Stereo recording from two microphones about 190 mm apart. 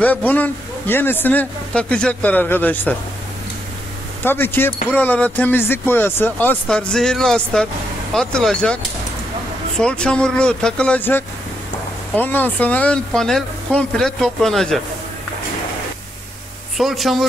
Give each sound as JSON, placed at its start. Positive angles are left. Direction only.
{"t": 0.0, "sound": "speech", "side_deg": 10}
{"t": 4.2, "sound": "speech", "side_deg": 10}
{"t": 9.8, "sound": "speech", "side_deg": 5}
{"t": 16.7, "sound": "speech", "side_deg": 0}